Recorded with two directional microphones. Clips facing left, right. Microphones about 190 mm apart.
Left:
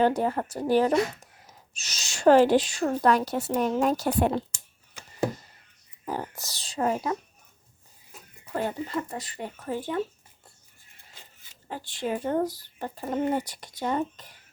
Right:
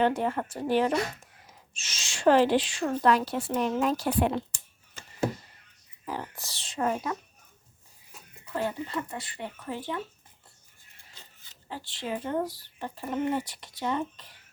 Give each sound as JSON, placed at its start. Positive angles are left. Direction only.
{"t": 0.0, "sound": "speech", "side_deg": 40}
{"t": 6.1, "sound": "speech", "side_deg": 45}
{"t": 8.5, "sound": "speech", "side_deg": 40}
{"t": 11.7, "sound": "speech", "side_deg": 50}